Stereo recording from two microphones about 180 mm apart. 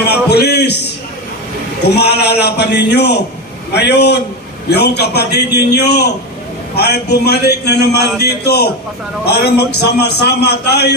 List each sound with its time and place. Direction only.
0.3 s music: 65° left (ahead or behind)
1.9 s a man's voice: 65° left (ahead or behind)